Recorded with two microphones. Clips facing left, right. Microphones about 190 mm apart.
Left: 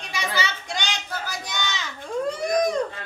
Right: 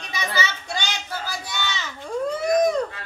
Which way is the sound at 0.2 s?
15° left (ahead or behind).